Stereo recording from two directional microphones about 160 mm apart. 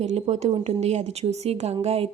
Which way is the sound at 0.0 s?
45° right (ahead or behind).